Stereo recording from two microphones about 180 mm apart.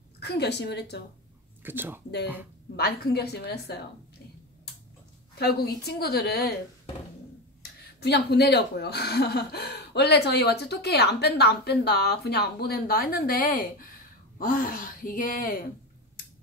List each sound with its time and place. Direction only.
0.2 s a woman's voice: 65° left (ahead or behind)
1.6 s speech: 10° right (ahead or behind)
2.7 s speech: 60° left (ahead or behind)
5.4 s speech: 60° left (ahead or behind)
8.0 s speech: 65° left (ahead or behind)